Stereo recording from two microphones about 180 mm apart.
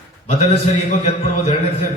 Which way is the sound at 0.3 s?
35° left (ahead or behind).